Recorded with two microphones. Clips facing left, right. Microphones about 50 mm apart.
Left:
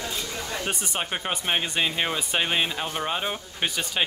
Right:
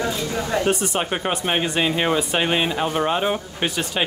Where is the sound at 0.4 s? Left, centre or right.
Right.